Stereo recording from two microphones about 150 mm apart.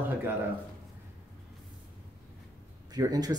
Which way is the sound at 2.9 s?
25° right (ahead or behind).